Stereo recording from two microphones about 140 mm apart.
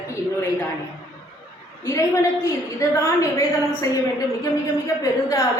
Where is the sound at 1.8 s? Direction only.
20° left (ahead or behind).